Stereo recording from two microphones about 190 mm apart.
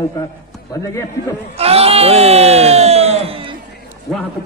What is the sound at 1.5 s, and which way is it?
A man's voice, 30° right (ahead or behind).